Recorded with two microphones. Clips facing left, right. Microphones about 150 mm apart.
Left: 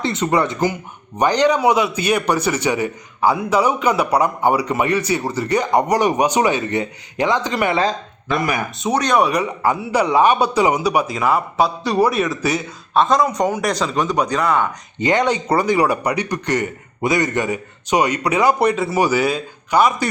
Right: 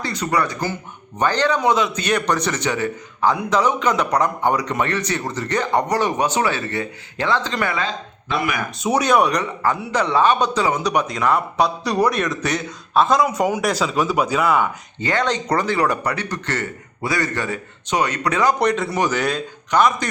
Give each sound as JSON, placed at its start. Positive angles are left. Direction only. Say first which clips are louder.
{"t": 0.0, "sound": "speech", "louder": "left 4 dB", "side_deg": 25}
{"t": 7.7, "sound": "speech", "louder": "left 6 dB", "side_deg": 35}
{"t": 8.8, "sound": "a man's voice", "louder": "even", "side_deg": -5}
{"t": 14.9, "sound": "speech", "louder": "left 4 dB", "side_deg": 15}